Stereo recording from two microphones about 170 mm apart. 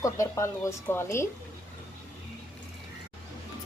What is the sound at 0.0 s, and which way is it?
Speech, 20° left (ahead or behind).